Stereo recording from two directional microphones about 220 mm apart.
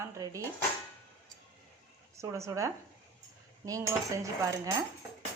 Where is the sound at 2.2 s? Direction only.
15° right (ahead or behind).